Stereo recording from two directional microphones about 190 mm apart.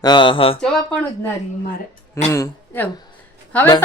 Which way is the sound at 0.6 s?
5° left (ahead or behind).